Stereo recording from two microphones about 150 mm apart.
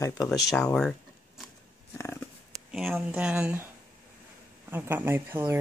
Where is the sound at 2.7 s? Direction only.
5° right (ahead or behind).